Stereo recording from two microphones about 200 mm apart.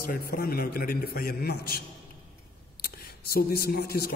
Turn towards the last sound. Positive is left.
turn(degrees=50)  # may be behind; listen again after turning